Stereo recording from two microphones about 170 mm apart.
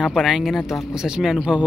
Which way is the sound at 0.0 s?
Centre (ahead or behind).